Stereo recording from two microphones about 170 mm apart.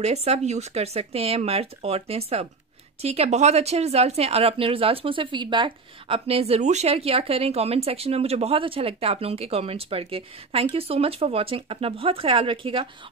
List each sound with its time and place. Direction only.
0.0 s speech: 40° right (ahead or behind)